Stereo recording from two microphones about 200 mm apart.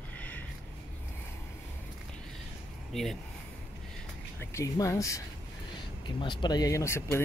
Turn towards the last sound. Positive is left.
turn(degrees=15)  # may be behind; listen again after turning